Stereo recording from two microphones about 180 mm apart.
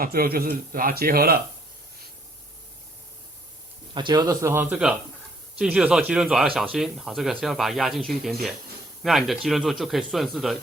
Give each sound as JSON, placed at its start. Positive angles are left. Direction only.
{"t": 0.0, "sound": "speech", "side_deg": -55}
{"t": 3.9, "sound": "speech", "side_deg": -25}